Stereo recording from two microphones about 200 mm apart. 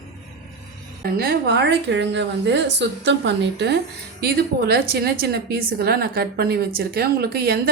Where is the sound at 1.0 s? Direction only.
50° right (ahead or behind).